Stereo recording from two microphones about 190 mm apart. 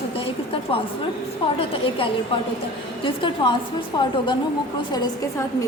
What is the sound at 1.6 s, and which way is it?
A woman's voice, 30° left (ahead or behind).